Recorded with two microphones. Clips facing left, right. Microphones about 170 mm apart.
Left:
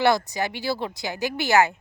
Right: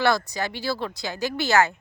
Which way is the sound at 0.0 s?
20° left (ahead or behind).